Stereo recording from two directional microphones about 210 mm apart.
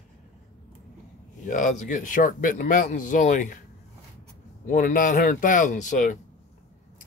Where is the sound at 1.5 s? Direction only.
35° left (ahead or behind).